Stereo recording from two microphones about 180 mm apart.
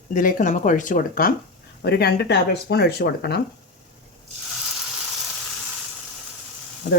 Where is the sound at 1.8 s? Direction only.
60° left (ahead or behind).